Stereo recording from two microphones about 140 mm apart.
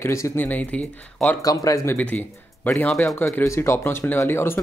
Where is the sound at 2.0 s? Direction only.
10° left (ahead or behind).